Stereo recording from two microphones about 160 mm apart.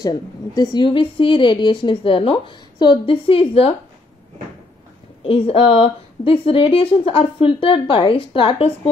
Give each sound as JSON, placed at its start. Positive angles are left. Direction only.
{"t": 0.0, "sound": "a woman's voice", "side_deg": 25}
{"t": 5.2, "sound": "a woman's voice", "side_deg": 35}